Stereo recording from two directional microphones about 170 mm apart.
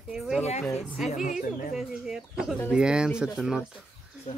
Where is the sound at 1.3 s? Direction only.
50° left (ahead or behind).